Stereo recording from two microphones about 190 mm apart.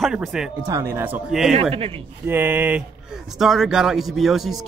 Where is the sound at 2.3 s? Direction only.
10° right (ahead or behind).